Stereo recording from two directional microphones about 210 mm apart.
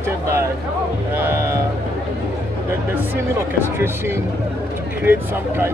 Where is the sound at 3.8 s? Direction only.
10° right (ahead or behind).